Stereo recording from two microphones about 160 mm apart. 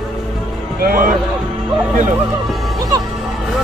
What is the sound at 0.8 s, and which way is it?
Speech, 65° right (ahead or behind).